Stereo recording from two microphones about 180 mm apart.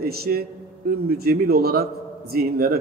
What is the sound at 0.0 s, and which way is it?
A man's voice, 60° right (ahead or behind).